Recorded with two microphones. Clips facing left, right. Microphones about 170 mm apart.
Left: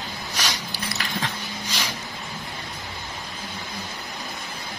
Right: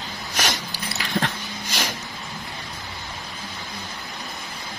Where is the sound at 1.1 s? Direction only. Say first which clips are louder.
Right 6 dB; 50° right (ahead or behind).